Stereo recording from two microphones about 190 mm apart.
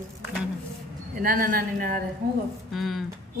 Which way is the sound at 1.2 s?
45° right (ahead or behind).